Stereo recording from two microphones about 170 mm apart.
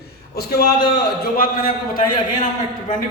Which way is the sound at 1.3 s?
55° left (ahead or behind).